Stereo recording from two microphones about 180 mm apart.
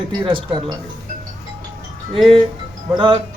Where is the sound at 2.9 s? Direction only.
25° right (ahead or behind).